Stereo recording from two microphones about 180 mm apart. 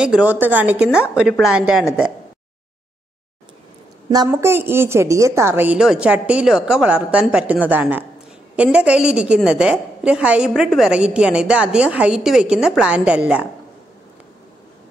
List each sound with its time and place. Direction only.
0.0 s a woman's voice: 5° right (ahead or behind)
4.1 s a woman's voice: 20° right (ahead or behind)